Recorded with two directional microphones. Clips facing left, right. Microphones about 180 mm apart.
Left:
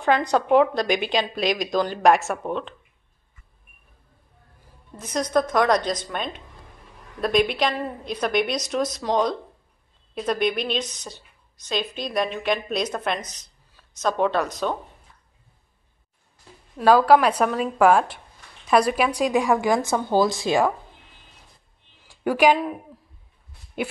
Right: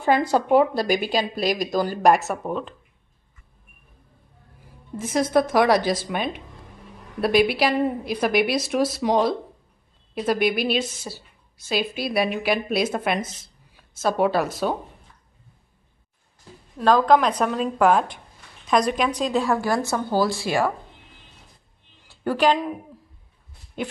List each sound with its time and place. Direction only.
0.0 s speech: 5° right (ahead or behind)
5.1 s a woman's voice: 5° right (ahead or behind)
16.7 s a woman's voice: 10° left (ahead or behind)
22.0 s speech: 10° left (ahead or behind)